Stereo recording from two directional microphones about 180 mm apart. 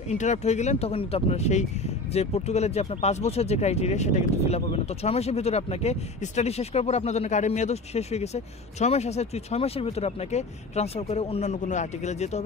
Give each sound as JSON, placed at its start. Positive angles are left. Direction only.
{"t": 0.1, "sound": "speech", "side_deg": 40}